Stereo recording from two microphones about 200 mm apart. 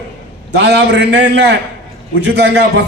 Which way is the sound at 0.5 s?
60° right (ahead or behind).